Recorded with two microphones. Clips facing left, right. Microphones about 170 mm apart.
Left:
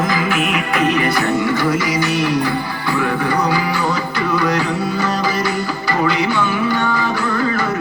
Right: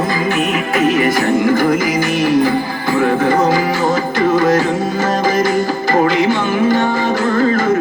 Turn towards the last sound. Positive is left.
turn(degrees=-45)  # may be behind; listen again after turning